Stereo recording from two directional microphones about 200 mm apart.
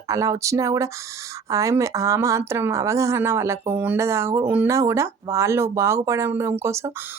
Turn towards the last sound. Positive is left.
turn(degrees=-15)  # may be behind; listen again after turning